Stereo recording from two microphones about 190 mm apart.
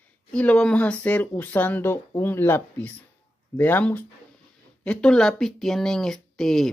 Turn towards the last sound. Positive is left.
turn(degrees=0)  # may be behind; listen again after turning